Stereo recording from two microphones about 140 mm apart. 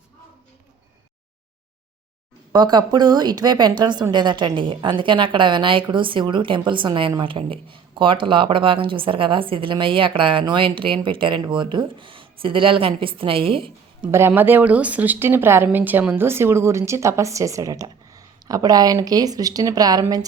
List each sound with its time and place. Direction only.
2.5 s speech: 30° right (ahead or behind)
14.1 s speech: 15° right (ahead or behind)